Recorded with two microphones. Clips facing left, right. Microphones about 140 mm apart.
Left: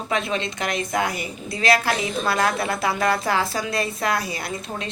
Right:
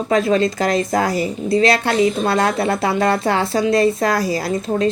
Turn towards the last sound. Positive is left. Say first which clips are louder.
# right 12 dB
turn(degrees=-35)  # may be behind; listen again after turning